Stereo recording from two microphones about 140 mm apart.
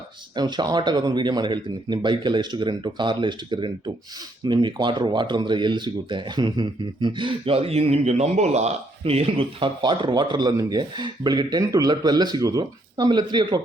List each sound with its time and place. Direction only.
0.3 s speech: 30° right (ahead or behind)